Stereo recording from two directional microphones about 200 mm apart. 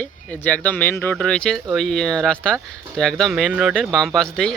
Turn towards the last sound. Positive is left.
turn(degrees=5)  # may be behind; listen again after turning